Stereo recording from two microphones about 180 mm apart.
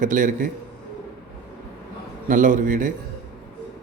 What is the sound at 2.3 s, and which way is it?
Speech, 45° right (ahead or behind).